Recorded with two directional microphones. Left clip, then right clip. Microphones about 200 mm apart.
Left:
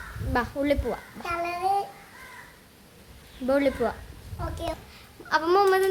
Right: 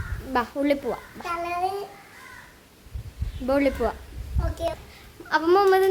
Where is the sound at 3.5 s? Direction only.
10° right (ahead or behind).